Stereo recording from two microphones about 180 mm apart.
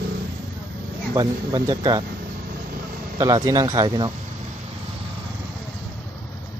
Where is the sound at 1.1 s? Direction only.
20° right (ahead or behind).